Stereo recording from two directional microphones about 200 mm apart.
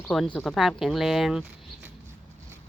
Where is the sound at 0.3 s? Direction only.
Centre (ahead or behind).